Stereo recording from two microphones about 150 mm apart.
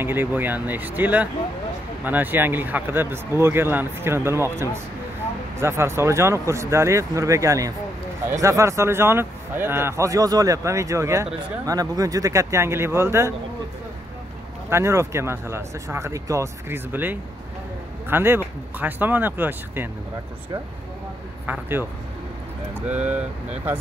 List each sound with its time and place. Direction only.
0.0 s speech: 15° right (ahead or behind)
14.7 s speech: 20° right (ahead or behind)
21.5 s speech: 15° right (ahead or behind)